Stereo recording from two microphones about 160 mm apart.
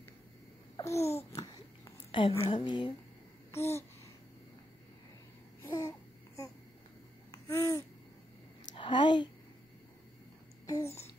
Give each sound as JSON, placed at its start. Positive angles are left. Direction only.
{"t": 0.7, "sound": "babbling", "side_deg": 20}
{"t": 1.3, "sound": "a sound", "side_deg": 20}
{"t": 2.4, "sound": "speech", "side_deg": 30}
{"t": 3.5, "sound": "babbling", "side_deg": 15}
{"t": 5.6, "sound": "babbling", "side_deg": 20}
{"t": 8.7, "sound": "a sound", "side_deg": 30}